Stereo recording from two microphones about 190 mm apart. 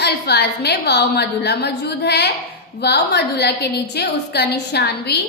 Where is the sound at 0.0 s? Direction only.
60° left (ahead or behind).